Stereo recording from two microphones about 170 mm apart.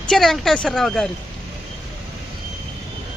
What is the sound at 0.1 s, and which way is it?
Speech, centre (ahead or behind).